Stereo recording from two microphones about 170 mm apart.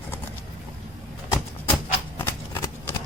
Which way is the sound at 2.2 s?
25° left (ahead or behind).